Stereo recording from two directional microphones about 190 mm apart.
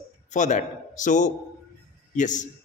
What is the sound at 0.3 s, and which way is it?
A man's voice, 40° left (ahead or behind).